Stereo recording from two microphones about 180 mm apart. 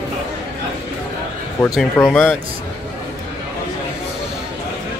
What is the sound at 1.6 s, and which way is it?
Speech, 10° left (ahead or behind).